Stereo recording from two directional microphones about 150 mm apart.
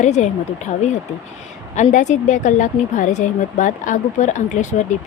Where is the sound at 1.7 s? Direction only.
55° left (ahead or behind).